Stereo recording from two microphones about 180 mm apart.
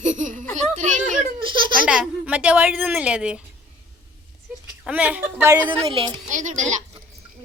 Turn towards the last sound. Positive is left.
turn(degrees=-45)  # may be behind; listen again after turning